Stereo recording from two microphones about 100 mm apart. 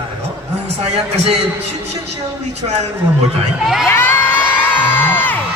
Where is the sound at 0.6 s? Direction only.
90° right.